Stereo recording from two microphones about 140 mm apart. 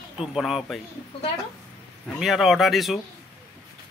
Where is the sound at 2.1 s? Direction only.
Centre (ahead or behind).